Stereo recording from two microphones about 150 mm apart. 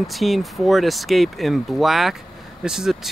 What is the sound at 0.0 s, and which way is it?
Speech, centre (ahead or behind).